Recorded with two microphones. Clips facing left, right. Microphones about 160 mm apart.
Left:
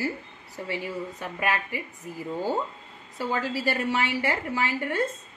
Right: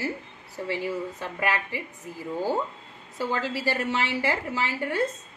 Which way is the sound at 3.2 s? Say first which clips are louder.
Even; 15° left (ahead or behind).